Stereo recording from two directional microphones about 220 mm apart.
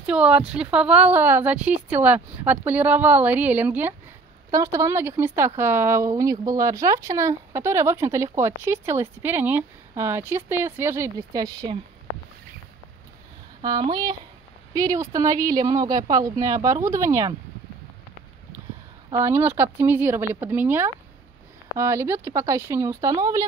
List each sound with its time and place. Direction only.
0.0 s speech: 5° right (ahead or behind)
13.6 s speech: 20° right (ahead or behind)
19.0 s speech: 15° right (ahead or behind)